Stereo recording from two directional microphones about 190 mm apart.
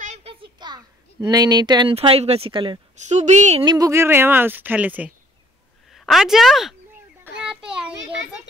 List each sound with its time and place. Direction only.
0.0 s a child's voice: 35° right (ahead or behind)
3.6 s a woman's voice: 20° right (ahead or behind); by 6.7 s centre (ahead or behind)
7.4 s a sound: 5° right (ahead or behind)